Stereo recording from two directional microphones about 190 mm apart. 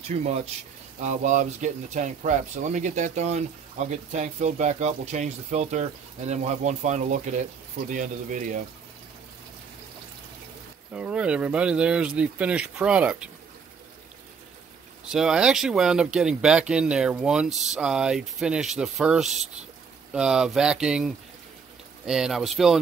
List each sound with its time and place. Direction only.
0.1 s speech: 35° right (ahead or behind)
10.9 s speech: 5° right (ahead or behind)
15.0 s speech: 5° right (ahead or behind)
19.2 s speech: 35° right (ahead or behind)
20.1 s speech: 5° right (ahead or behind)